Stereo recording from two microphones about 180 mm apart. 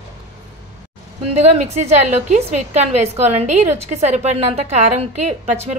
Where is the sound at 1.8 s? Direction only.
40° right (ahead or behind).